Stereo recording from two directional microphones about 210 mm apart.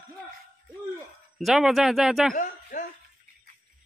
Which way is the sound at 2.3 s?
40° left (ahead or behind).